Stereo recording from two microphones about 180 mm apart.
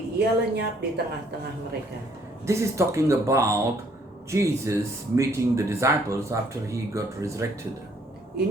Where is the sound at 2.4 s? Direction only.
15° right (ahead or behind).